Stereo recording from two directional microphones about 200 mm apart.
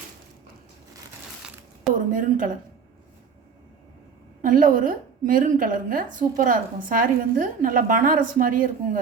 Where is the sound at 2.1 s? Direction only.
40° right (ahead or behind).